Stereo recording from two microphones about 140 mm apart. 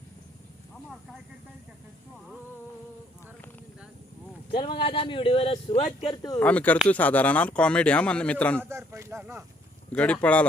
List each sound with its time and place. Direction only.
4.5 s speech: 40° left (ahead or behind)
6.4 s speech: 10° left (ahead or behind)
8.7 s speech: 20° right (ahead or behind)
9.9 s speech: 10° left (ahead or behind)